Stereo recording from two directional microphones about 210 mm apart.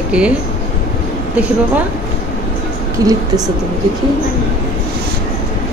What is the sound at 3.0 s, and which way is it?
Speech, 15° right (ahead or behind).